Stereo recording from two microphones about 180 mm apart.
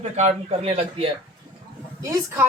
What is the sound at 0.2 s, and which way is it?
Speech, 40° right (ahead or behind).